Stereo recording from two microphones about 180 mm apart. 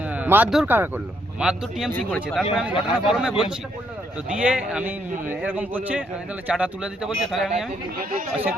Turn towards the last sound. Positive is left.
turn(degrees=0)  # may be behind; listen again after turning